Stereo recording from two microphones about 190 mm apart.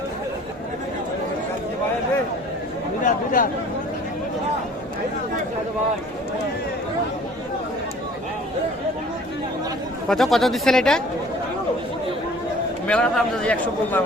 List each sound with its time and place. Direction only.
3.0 s speech: 45° left (ahead or behind)
10.1 s a man's voice: centre (ahead or behind)
12.9 s a man's voice: 5° left (ahead or behind)